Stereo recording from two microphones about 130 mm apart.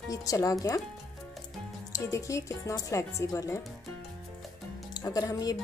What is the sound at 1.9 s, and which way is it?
Speech, 25° left (ahead or behind).